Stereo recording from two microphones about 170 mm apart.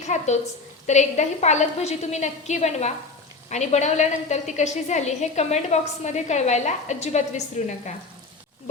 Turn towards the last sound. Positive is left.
turn(degrees=40)  # may be behind; listen again after turning